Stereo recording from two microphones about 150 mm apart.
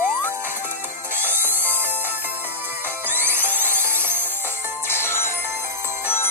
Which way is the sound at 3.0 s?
15° right (ahead or behind).